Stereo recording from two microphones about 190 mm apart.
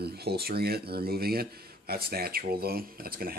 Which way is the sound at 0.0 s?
55° right (ahead or behind).